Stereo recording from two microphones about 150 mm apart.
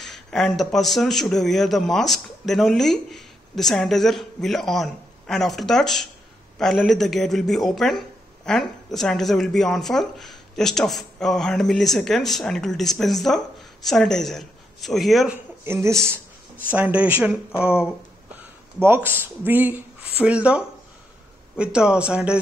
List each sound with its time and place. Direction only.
0.0 s speech: centre (ahead or behind)
15.6 s speech: 15° right (ahead or behind)